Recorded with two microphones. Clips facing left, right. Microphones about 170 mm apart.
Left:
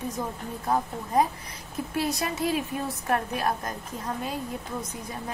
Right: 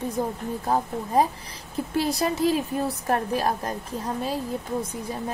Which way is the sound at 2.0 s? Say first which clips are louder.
Right 5 dB; 30° right (ahead or behind).